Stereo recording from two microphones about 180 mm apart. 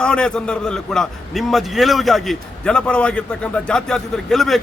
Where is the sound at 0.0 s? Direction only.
5° left (ahead or behind).